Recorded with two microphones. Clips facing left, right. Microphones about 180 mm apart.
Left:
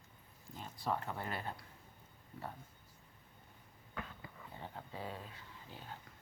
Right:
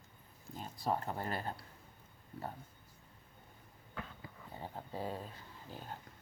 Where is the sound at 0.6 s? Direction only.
35° right (ahead or behind).